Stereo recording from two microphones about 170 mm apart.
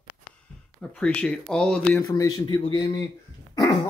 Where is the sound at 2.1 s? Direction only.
20° left (ahead or behind).